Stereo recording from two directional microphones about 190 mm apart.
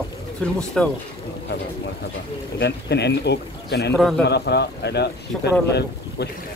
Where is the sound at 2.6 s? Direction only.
60° left (ahead or behind).